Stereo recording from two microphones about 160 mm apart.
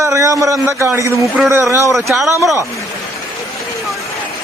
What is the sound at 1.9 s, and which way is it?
Speech, centre (ahead or behind).